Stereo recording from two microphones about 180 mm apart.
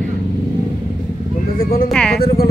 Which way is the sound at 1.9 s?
5° left (ahead or behind).